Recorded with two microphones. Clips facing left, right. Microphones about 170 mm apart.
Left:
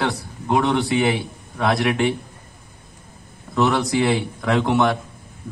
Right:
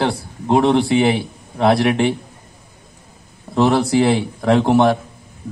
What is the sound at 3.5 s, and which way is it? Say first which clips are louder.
A man's voice: right 4 dB; 30° right (ahead or behind).